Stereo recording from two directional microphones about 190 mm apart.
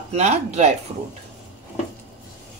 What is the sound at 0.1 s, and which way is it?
Speech, 35° right (ahead or behind).